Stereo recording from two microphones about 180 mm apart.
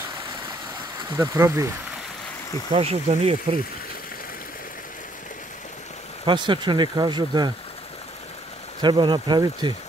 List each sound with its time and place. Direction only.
1.1 s speech: 15° right (ahead or behind)
2.7 s speech: 35° right (ahead or behind)
6.2 s speech: 25° right (ahead or behind)
8.8 s speech: 25° right (ahead or behind)